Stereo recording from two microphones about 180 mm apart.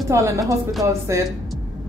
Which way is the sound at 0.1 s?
15° right (ahead or behind).